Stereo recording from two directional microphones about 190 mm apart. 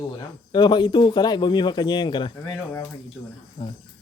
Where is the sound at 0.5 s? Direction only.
25° left (ahead or behind).